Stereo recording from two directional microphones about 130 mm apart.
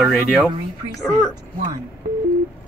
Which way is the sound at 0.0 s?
5° right (ahead or behind).